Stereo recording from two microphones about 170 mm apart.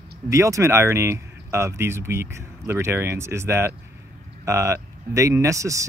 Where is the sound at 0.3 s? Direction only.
15° right (ahead or behind).